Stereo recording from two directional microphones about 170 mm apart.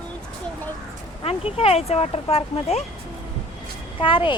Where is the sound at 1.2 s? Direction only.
35° left (ahead or behind).